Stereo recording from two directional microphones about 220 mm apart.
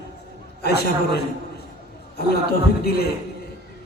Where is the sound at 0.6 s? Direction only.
50° left (ahead or behind).